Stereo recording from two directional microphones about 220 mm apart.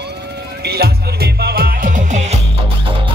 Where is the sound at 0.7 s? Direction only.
45° right (ahead or behind).